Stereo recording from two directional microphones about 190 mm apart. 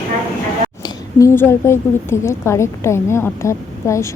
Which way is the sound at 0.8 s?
15° left (ahead or behind).